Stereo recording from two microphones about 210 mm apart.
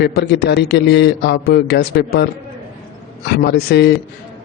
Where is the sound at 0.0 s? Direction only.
50° left (ahead or behind).